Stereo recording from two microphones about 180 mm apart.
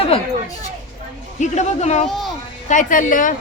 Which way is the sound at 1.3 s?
40° left (ahead or behind).